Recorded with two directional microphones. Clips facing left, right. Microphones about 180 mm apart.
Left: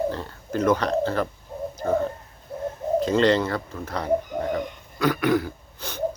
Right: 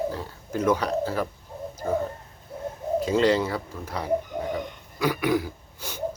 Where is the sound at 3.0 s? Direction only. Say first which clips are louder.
Left 2 dB; 10° right (ahead or behind).